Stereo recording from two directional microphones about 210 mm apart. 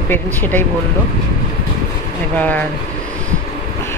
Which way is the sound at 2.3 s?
5° left (ahead or behind).